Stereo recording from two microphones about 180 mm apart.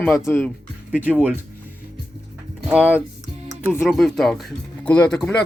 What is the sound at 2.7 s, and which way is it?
Speech, 10° right (ahead or behind).